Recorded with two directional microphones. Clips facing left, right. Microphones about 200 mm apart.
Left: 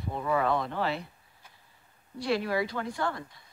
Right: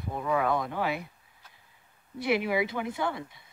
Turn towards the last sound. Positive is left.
turn(degrees=-20)  # may be behind; listen again after turning